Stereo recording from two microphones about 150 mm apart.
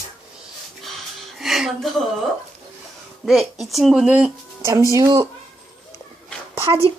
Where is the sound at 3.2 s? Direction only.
Centre (ahead or behind).